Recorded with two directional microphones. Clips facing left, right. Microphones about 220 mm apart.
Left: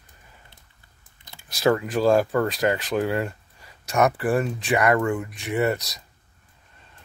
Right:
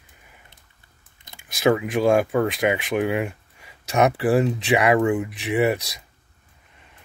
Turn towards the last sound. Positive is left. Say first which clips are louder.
# right 3 dB
turn(degrees=-15)  # may be behind; listen again after turning